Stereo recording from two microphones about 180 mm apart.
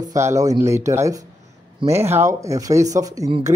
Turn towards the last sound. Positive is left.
turn(degrees=-30)  # may be behind; listen again after turning